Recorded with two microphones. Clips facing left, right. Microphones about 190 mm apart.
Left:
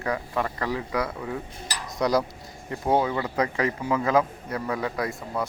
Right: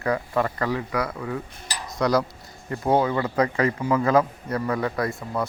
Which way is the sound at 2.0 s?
15° left (ahead or behind).